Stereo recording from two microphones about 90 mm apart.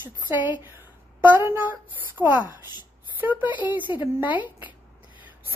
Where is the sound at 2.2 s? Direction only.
15° right (ahead or behind).